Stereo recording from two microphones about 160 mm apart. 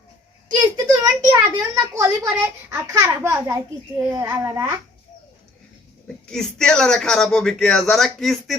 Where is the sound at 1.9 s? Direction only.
20° right (ahead or behind).